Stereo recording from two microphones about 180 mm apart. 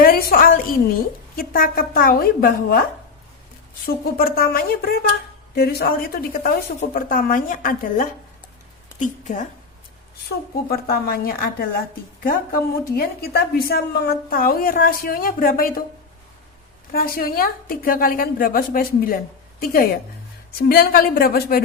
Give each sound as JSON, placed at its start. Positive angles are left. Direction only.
{"t": 0.0, "sound": "a woman's voice", "side_deg": 55}
{"t": 3.8, "sound": "a woman's voice", "side_deg": 55}
{"t": 10.7, "sound": "speech", "side_deg": 55}
{"t": 13.0, "sound": "a woman's voice", "side_deg": 55}
{"t": 16.9, "sound": "a woman's voice", "side_deg": 55}